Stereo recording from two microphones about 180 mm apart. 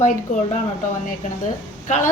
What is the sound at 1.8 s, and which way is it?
Speech, 40° left (ahead or behind).